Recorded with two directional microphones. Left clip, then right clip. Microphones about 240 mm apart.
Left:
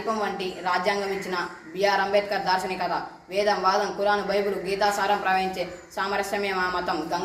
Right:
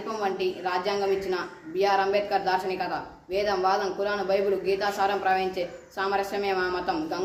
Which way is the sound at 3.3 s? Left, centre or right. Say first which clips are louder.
Left 2 dB; centre.